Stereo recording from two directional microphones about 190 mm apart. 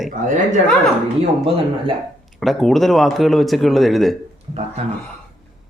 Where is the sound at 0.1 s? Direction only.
40° right (ahead or behind).